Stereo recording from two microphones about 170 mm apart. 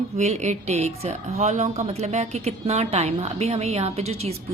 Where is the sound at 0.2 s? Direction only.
40° right (ahead or behind).